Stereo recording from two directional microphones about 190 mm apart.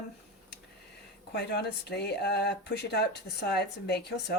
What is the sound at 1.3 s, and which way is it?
Speech, 60° left (ahead or behind).